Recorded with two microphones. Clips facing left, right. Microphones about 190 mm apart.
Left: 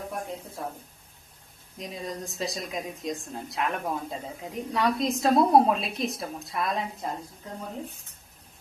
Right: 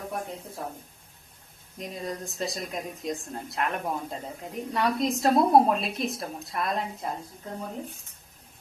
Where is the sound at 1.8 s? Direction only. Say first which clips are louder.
Right 1 dB; centre (ahead or behind).